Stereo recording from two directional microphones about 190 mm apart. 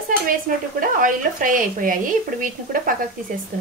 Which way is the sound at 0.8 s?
45° right (ahead or behind).